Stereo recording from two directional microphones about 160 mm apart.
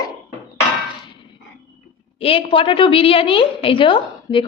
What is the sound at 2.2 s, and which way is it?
A woman's voice, 35° left (ahead or behind).